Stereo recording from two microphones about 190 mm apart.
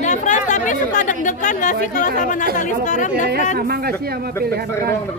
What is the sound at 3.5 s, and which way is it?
Speech, 55° right (ahead or behind).